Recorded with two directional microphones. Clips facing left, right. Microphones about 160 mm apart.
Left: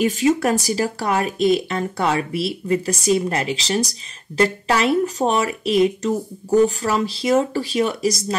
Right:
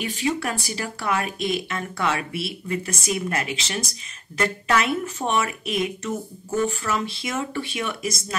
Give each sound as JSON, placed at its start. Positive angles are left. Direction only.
{"t": 0.0, "sound": "speech", "side_deg": 40}